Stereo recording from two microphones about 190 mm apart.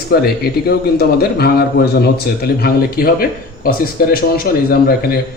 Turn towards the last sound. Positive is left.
turn(degrees=55)  # may be behind; listen again after turning